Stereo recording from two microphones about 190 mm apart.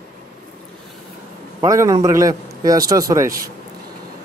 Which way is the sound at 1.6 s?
15° right (ahead or behind).